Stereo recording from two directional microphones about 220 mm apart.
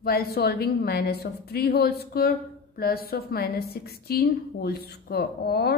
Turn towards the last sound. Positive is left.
turn(degrees=45)  # may be behind; listen again after turning